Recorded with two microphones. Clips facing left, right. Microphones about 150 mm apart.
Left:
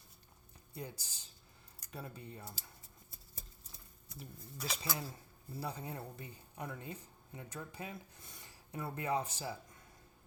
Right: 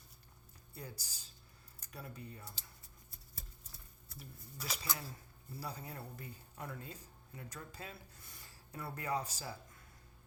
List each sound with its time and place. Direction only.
0.7 s speech: 20° left (ahead or behind)
4.1 s speech: 25° left (ahead or behind)